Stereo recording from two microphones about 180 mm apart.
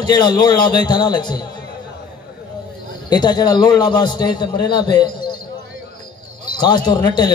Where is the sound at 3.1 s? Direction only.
25° left (ahead or behind).